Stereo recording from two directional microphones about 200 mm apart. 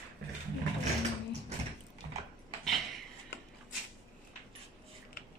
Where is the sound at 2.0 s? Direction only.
30° right (ahead or behind).